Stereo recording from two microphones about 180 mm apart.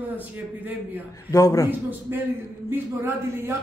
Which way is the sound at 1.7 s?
10° right (ahead or behind).